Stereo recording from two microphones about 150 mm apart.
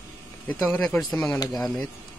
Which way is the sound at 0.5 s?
15° left (ahead or behind).